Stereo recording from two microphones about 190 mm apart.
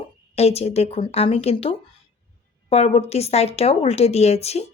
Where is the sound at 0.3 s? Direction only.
35° left (ahead or behind).